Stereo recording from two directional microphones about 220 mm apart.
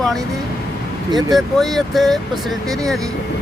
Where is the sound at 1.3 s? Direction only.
Centre (ahead or behind).